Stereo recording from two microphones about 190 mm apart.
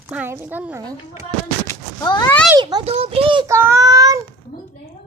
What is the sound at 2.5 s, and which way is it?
Speech, 25° right (ahead or behind).